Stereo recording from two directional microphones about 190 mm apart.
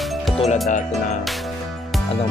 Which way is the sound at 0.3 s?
35° left (ahead or behind).